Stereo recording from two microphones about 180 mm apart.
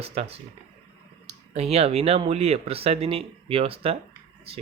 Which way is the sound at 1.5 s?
35° right (ahead or behind).